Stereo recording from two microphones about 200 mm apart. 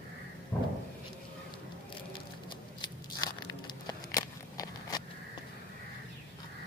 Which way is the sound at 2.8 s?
20° left (ahead or behind).